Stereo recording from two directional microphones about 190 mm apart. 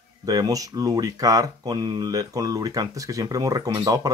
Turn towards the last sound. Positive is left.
turn(degrees=-20)  # may be behind; listen again after turning